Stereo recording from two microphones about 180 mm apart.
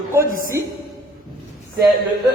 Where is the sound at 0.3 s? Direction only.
50° right (ahead or behind).